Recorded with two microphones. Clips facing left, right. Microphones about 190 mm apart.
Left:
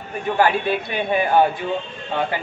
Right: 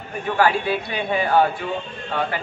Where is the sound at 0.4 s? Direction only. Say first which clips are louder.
Left 1 dB; 20° left (ahead or behind).